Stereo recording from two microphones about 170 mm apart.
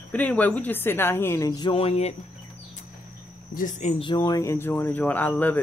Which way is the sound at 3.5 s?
50° left (ahead or behind).